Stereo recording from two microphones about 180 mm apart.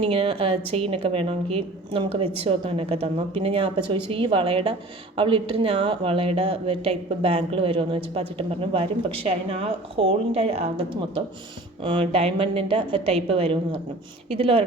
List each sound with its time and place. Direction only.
0.0 s speech: 30° right (ahead or behind)